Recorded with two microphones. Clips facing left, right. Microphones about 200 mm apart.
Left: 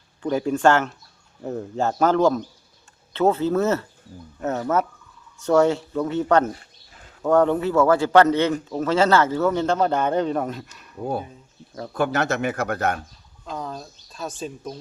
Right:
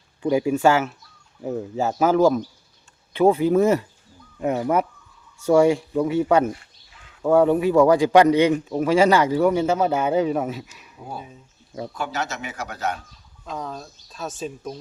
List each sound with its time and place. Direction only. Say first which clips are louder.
0.2 s a man's voice: right 2 dB; 10° right (ahead or behind)
6.6 s a sound: left 3 dB; 40° left (ahead or behind)
7.2 s a man's voice: right 1 dB; 10° right (ahead or behind)
11.9 s a man's voice: left 8 dB; 55° left (ahead or behind)
13.4 s speech: even; centre (ahead or behind)